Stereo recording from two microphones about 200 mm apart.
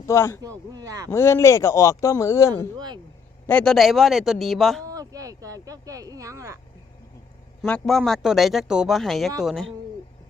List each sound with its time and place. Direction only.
0.1 s speech: 15° left (ahead or behind)
0.7 s speech: 15° right (ahead or behind)
1.1 s speech: 15° left (ahead or behind)
2.7 s speech: 20° right (ahead or behind)
3.4 s speech: 5° left (ahead or behind)
4.9 s speech: 15° right (ahead or behind)
7.6 s speech: centre (ahead or behind)